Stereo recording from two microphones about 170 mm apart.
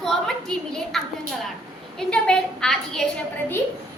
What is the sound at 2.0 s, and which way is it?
A woman's voice, 5° left (ahead or behind).